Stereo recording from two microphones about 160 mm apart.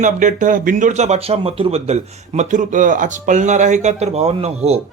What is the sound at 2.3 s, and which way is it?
Speech, 50° right (ahead or behind).